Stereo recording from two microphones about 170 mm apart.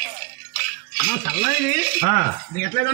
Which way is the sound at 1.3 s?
50° left (ahead or behind).